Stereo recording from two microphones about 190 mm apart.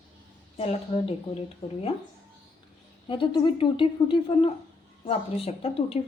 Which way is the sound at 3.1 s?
25° left (ahead or behind).